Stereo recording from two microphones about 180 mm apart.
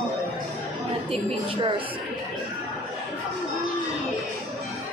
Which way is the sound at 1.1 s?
30° right (ahead or behind).